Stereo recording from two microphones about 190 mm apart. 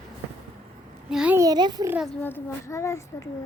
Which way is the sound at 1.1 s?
5° right (ahead or behind).